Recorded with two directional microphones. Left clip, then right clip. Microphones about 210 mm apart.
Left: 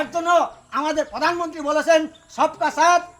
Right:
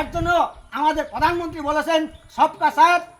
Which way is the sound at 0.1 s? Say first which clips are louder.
Left 2 dB; 20° left (ahead or behind).